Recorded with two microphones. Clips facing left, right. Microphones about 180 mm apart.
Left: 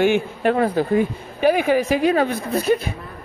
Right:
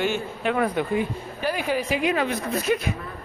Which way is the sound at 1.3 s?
60° left (ahead or behind).